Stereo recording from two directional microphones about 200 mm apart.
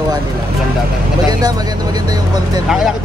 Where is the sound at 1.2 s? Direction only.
20° right (ahead or behind).